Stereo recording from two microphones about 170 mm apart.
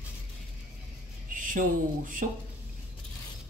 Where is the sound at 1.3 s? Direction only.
50° right (ahead or behind).